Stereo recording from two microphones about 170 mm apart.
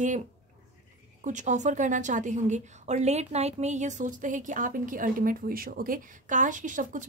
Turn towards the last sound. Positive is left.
turn(degrees=-50)  # may be behind; listen again after turning